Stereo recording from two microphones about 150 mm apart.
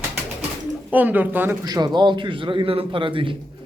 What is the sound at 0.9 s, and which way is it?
Speech, 10° right (ahead or behind).